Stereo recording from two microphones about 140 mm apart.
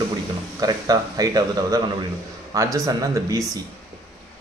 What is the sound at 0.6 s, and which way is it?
Speech, 25° right (ahead or behind).